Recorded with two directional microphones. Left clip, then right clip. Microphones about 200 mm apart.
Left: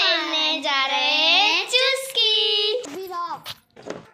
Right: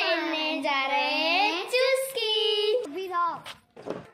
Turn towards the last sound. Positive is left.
turn(degrees=50)  # may be behind; listen again after turning